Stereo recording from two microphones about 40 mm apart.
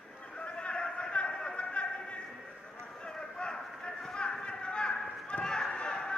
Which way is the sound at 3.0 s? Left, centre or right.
Left.